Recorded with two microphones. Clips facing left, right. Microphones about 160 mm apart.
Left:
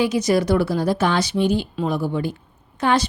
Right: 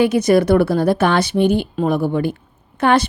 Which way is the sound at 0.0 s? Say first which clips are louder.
Right 5 dB; 60° right (ahead or behind).